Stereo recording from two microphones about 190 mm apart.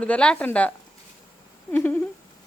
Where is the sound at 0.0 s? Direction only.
5° left (ahead or behind).